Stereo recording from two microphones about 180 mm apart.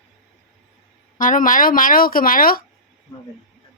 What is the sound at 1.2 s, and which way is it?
Speech, 50° left (ahead or behind).